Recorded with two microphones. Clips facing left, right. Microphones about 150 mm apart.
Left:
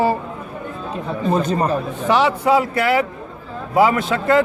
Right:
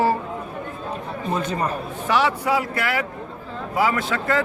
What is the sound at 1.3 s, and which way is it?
Speech, 40° left (ahead or behind).